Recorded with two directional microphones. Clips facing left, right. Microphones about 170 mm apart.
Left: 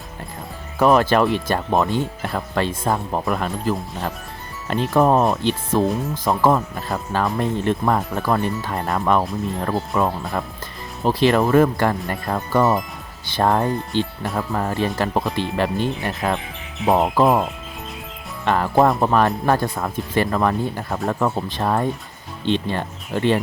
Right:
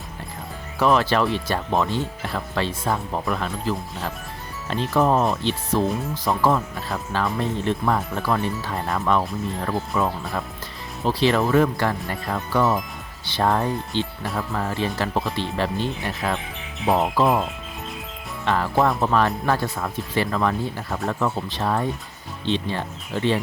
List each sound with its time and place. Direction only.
0.8 s speech: 45° left (ahead or behind)
4.9 s speech: 45° left (ahead or behind)
18.4 s speech: 45° left (ahead or behind)